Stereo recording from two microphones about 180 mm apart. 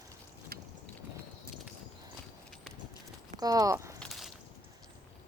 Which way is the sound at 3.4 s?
20° right (ahead or behind).